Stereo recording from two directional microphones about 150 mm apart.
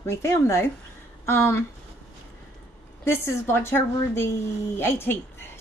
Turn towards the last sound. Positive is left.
turn(degrees=15)  # may be behind; listen again after turning